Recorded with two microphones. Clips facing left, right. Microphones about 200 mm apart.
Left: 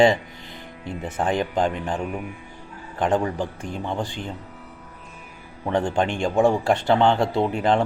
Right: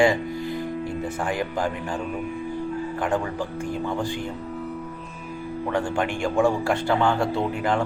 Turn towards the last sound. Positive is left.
turn(degrees=20)  # may be behind; listen again after turning